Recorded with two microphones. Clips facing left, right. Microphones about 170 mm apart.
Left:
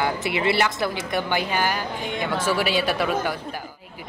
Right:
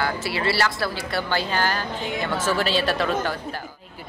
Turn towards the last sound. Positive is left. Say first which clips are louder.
# even
turn(degrees=10)  # may be behind; listen again after turning